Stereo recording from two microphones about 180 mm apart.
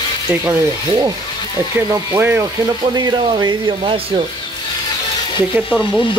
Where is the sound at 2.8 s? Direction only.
20° right (ahead or behind).